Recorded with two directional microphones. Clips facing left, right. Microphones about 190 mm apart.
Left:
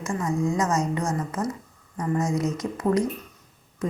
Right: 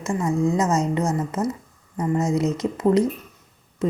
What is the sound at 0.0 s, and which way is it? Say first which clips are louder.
A woman's voice: right 4 dB; 25° right (ahead or behind).